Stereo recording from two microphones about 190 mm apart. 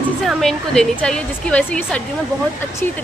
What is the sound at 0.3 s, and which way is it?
Speech, centre (ahead or behind).